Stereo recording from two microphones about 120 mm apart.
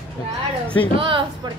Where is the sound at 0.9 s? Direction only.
45° right (ahead or behind).